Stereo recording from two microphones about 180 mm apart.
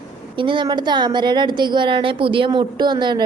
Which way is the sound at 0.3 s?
25° right (ahead or behind).